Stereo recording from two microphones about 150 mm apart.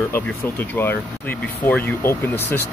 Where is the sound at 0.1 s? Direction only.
15° left (ahead or behind).